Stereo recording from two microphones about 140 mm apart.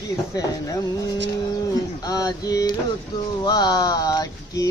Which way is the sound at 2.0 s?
25° left (ahead or behind).